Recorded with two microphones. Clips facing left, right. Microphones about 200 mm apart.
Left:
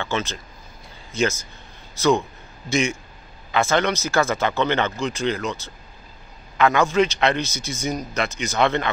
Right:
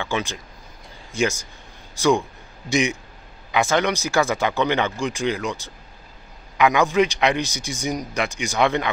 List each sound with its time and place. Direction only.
0.0 s speech: 15° right (ahead or behind)